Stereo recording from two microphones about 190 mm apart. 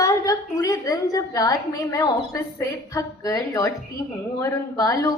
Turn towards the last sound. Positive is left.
turn(degrees=15)  # may be behind; listen again after turning